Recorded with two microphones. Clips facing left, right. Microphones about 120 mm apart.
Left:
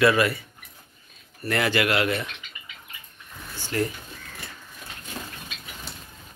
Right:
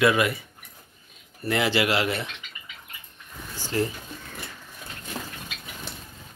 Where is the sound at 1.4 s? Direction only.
20° right (ahead or behind).